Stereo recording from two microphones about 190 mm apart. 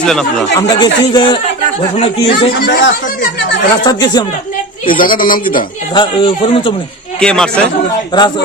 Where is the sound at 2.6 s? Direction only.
60° left (ahead or behind).